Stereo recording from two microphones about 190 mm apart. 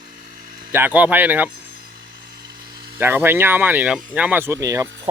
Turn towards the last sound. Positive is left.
turn(degrees=-15)  # may be behind; listen again after turning